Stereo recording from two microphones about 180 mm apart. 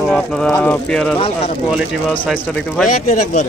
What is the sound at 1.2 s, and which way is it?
Speech, 35° left (ahead or behind).